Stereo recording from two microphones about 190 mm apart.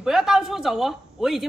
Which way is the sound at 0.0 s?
Centre (ahead or behind).